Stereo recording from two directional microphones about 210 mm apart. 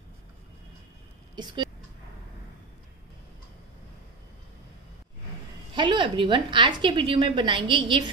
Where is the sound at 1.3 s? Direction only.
20° right (ahead or behind).